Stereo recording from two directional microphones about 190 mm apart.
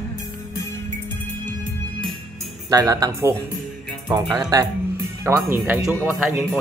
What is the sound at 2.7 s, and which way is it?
Speech, 20° right (ahead or behind).